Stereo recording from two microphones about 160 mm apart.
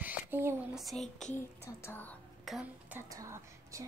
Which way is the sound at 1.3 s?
15° left (ahead or behind).